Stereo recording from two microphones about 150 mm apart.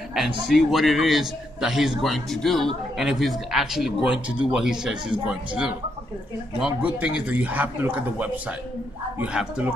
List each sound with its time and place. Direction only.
0.5 s a man's voice: centre (ahead or behind)
6.6 s a man's voice: 10° right (ahead or behind)